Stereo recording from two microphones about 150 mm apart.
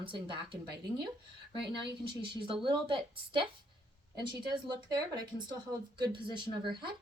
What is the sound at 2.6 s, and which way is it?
Speech, 35° right (ahead or behind).